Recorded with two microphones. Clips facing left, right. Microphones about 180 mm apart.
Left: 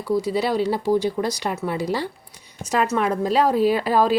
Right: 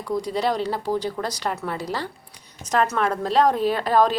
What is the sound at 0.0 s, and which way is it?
Speech, 5° left (ahead or behind).